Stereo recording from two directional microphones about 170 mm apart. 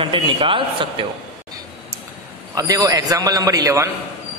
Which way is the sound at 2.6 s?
20° right (ahead or behind).